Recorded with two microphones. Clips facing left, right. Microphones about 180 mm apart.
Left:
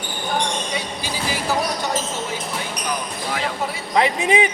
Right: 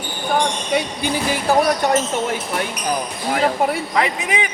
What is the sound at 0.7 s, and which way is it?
Train, 60° right (ahead or behind).